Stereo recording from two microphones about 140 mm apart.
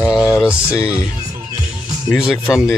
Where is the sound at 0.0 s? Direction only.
5° right (ahead or behind).